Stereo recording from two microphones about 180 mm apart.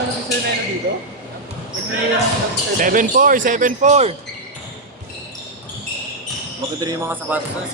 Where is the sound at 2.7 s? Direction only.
50° right (ahead or behind).